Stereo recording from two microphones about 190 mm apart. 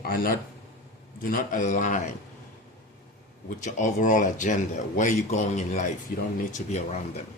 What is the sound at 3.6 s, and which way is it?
Speech, 40° left (ahead or behind).